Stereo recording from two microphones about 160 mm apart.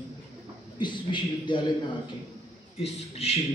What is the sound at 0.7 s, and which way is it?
Speech, 30° left (ahead or behind).